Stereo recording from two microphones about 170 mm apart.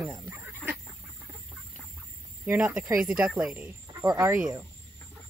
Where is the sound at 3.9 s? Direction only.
20° right (ahead or behind).